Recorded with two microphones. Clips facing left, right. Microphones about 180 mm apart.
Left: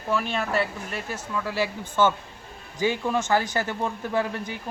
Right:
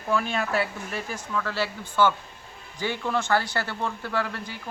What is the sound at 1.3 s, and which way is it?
Speech, 10° left (ahead or behind).